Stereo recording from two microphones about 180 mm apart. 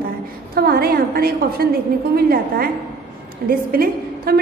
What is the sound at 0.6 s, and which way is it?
A woman's voice, 55° right (ahead or behind).